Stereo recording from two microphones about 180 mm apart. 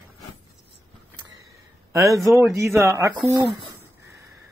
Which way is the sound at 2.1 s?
Centre (ahead or behind).